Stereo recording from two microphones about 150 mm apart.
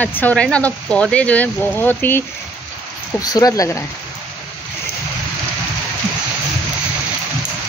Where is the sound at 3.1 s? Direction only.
25° left (ahead or behind).